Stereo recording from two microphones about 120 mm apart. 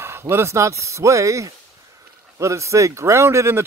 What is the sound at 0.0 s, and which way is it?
Speech, 20° right (ahead or behind).